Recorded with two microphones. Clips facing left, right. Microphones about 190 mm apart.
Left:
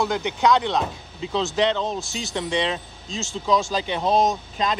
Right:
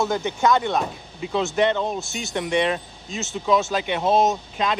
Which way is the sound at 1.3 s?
5° right (ahead or behind).